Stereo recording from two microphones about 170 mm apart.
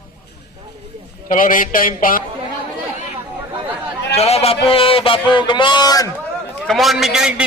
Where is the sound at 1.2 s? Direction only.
55° left (ahead or behind).